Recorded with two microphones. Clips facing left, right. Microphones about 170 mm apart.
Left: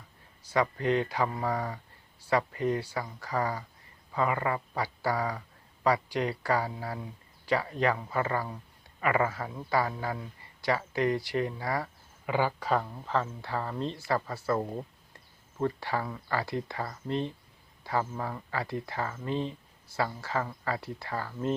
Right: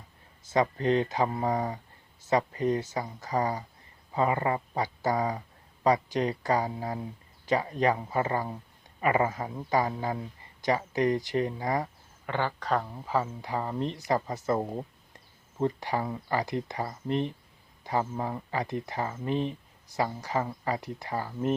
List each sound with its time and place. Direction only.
0.5 s speech: 25° right (ahead or behind)
12.2 s speech: 10° left (ahead or behind)
13.1 s speech: 10° right (ahead or behind)